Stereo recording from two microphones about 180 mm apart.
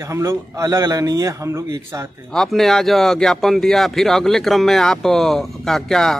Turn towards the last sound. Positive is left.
turn(degrees=5)  # may be behind; listen again after turning